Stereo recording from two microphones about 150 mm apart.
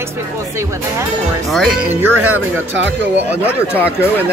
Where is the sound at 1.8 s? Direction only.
15° right (ahead or behind).